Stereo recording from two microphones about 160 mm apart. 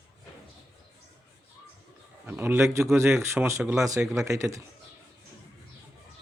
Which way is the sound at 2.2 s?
10° right (ahead or behind).